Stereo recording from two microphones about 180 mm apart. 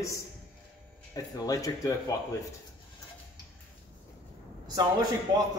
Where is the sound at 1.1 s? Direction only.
20° left (ahead or behind).